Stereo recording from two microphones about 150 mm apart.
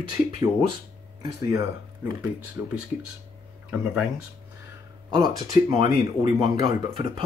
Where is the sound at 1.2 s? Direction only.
25° right (ahead or behind); by 4.1 s 5° right (ahead or behind).